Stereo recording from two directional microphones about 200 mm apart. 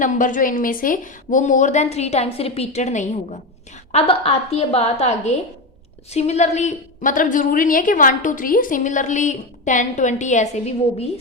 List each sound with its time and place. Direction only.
0.0 s a woman's voice: 40° left (ahead or behind)